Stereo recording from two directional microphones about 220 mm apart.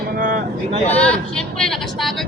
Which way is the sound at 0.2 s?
40° right (ahead or behind).